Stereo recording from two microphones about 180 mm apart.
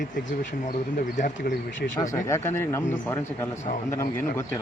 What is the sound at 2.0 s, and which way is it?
Speech, 15° left (ahead or behind).